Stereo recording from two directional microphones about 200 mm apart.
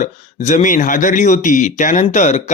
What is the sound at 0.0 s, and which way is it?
A man's voice, 35° left (ahead or behind).